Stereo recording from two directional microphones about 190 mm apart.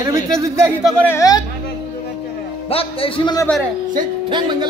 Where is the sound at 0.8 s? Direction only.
10° left (ahead or behind).